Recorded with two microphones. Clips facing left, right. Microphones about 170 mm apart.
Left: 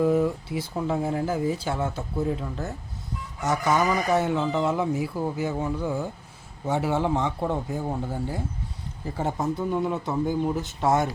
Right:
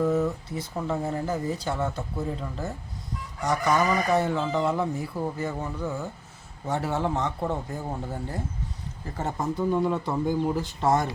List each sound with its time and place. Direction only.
0.0 s speech: 10° left (ahead or behind)